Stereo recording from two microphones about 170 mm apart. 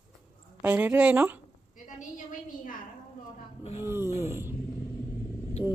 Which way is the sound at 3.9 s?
15° right (ahead or behind).